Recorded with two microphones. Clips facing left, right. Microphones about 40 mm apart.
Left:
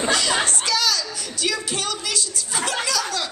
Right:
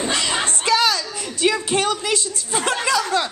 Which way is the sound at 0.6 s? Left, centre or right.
Right.